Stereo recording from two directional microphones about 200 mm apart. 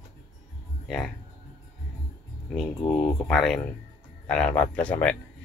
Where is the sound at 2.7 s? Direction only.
25° left (ahead or behind).